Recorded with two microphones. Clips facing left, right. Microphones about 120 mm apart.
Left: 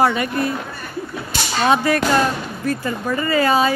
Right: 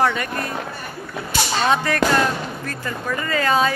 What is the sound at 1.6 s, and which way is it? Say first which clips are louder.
Speech: left 4 dB; 10° left (ahead or behind).